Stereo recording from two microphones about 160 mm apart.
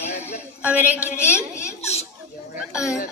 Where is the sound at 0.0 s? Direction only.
45° left (ahead or behind).